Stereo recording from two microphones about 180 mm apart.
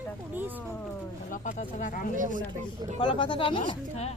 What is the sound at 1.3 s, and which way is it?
Speech, 40° left (ahead or behind).